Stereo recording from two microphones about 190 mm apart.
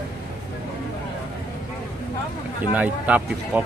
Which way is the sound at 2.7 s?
10° right (ahead or behind).